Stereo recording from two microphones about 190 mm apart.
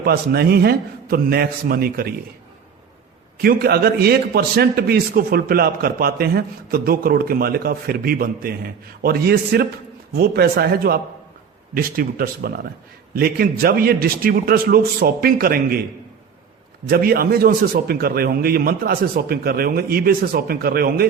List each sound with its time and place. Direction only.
0.0 s a man's voice: 55° right (ahead or behind)
3.3 s a man's voice: 55° right (ahead or behind)
16.8 s a man's voice: 55° right (ahead or behind)